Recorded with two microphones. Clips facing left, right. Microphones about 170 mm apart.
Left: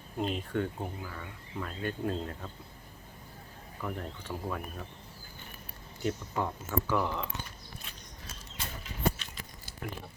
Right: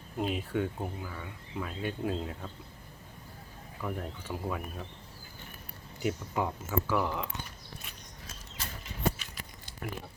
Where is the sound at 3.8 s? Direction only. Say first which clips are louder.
Right 1 dB; 5° right (ahead or behind).